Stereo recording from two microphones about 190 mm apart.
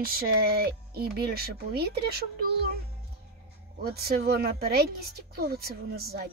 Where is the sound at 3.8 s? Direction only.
55° right (ahead or behind).